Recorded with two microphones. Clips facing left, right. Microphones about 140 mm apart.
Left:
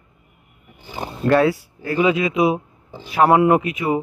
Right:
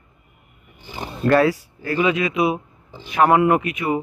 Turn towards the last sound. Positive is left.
turn(degrees=20)  # may be behind; listen again after turning